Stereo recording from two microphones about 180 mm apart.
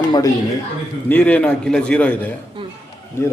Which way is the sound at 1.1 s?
10° left (ahead or behind).